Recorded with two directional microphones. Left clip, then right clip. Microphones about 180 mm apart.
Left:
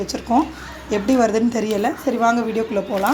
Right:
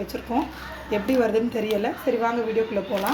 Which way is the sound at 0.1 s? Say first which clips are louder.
Left 8 dB; 45° left (ahead or behind).